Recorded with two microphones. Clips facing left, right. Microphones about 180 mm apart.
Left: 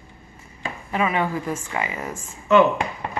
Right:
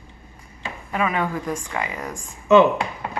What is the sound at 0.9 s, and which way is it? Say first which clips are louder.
Speech: left 1 dB; centre (ahead or behind).